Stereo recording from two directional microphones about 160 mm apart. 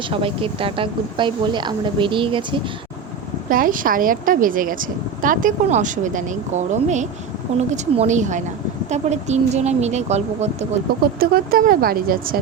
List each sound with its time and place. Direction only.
0.1 s a woman's voice: 35° right (ahead or behind)
3.5 s speech: 60° right (ahead or behind); by 10.7 s 45° right (ahead or behind)
11.2 s speech: 65° right (ahead or behind)